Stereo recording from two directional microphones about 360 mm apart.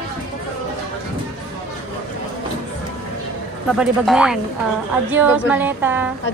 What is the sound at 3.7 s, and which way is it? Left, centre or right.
Speech, centre.